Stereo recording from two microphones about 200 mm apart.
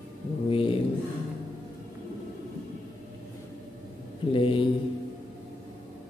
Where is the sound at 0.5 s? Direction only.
25° left (ahead or behind).